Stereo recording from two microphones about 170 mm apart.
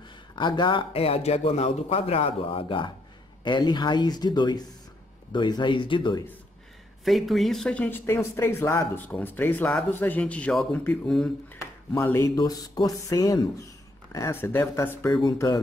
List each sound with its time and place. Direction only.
0.4 s a man's voice: 25° left (ahead or behind)
7.1 s speech: centre (ahead or behind)
11.6 s speech: 15° left (ahead or behind)